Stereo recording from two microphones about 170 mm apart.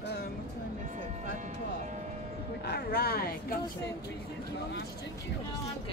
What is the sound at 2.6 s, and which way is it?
Speech, 65° left (ahead or behind).